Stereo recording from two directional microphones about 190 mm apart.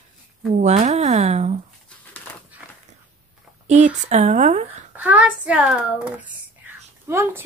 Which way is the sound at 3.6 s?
40° right (ahead or behind).